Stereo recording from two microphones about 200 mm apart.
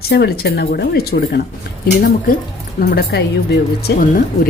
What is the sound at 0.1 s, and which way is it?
A woman's voice, 55° left (ahead or behind).